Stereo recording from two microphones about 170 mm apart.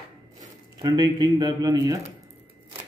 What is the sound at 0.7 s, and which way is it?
Speech, 25° right (ahead or behind).